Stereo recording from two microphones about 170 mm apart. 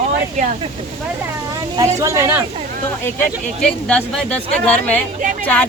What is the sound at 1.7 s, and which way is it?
Speech, 15° right (ahead or behind).